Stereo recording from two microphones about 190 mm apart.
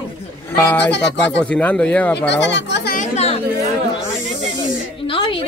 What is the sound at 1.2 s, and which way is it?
Speech, 5° left (ahead or behind).